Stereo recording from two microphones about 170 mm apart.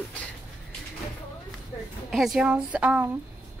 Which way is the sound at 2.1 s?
Centre (ahead or behind).